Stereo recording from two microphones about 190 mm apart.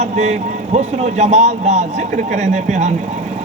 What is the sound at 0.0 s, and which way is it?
A man's voice, 35° right (ahead or behind).